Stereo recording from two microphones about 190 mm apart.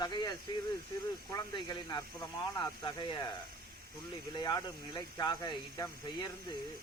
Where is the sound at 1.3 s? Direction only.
20° left (ahead or behind).